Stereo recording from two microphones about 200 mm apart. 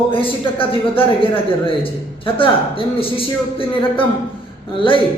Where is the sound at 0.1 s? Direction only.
25° left (ahead or behind).